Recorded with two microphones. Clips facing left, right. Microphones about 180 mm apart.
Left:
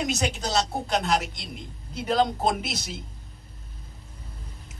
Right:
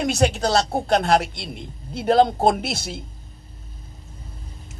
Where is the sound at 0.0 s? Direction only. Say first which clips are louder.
Right 7 dB; 55° right (ahead or behind).